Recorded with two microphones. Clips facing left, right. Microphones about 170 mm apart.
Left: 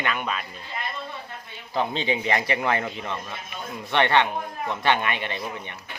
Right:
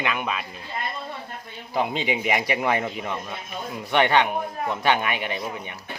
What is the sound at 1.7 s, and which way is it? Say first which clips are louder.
A man's voice: right 1 dB; 10° right (ahead or behind).